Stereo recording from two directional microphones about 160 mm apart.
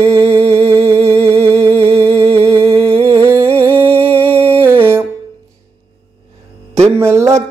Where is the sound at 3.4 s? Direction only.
35° right (ahead or behind).